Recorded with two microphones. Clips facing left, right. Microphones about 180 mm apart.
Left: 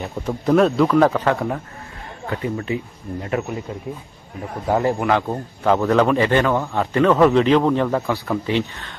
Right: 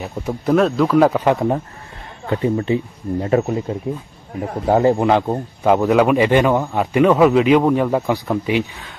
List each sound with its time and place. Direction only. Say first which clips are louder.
0.0 s speech: right 1 dB; 5° right (ahead or behind)
2.2 s speech: right 6 dB; 25° right (ahead or behind)
4.6 s speech: right 4 dB; 25° right (ahead or behind); by 8.9 s 10° right (ahead or behind)